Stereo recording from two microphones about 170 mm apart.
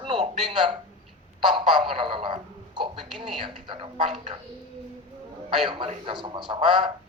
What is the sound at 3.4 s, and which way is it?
Speech, 30° right (ahead or behind).